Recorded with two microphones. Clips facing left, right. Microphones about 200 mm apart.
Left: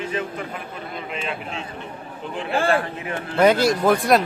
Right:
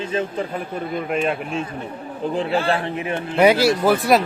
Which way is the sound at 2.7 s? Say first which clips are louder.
Right 1 dB; 20° right (ahead or behind).